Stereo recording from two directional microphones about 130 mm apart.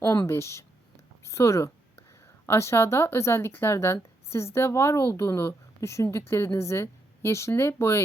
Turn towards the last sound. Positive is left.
turn(degrees=20)  # may be behind; listen again after turning